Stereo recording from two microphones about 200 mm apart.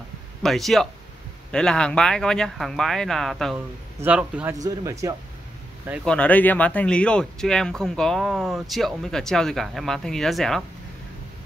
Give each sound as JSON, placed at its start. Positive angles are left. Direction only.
{"t": 0.4, "sound": "a man's voice", "side_deg": 0}
{"t": 6.0, "sound": "speech", "side_deg": 5}